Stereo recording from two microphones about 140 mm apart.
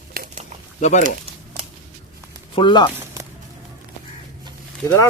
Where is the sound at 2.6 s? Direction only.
35° left (ahead or behind).